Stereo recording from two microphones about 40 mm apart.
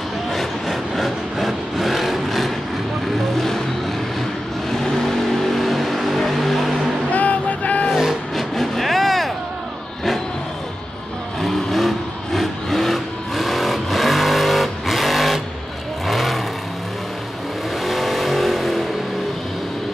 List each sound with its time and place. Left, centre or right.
0.3 s vehicle: centre
4.7 s vehicle: centre
7.1 s music: left
8.4 s vehicle: centre
11.4 s vehicle: centre
17.8 s vehicle: centre